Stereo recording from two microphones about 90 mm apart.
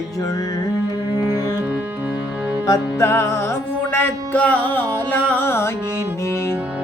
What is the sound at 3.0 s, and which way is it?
Music, 30° left (ahead or behind).